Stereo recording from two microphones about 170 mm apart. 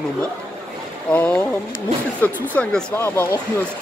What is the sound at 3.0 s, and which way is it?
Speech, 15° left (ahead or behind).